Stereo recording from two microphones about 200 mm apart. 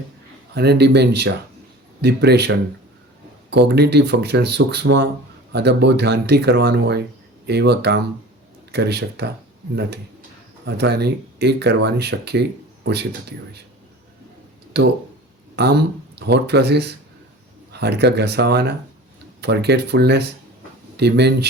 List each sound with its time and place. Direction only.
0.5 s speech: 55° right (ahead or behind)
3.5 s speech: 55° right (ahead or behind)
10.7 s speech: 55° right (ahead or behind)
15.5 s speech: 55° right (ahead or behind)